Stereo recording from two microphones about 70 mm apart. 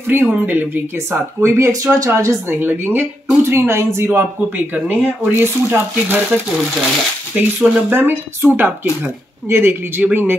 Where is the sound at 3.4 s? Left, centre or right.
Right.